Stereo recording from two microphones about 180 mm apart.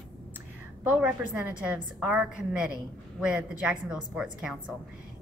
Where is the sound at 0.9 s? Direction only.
5° right (ahead or behind).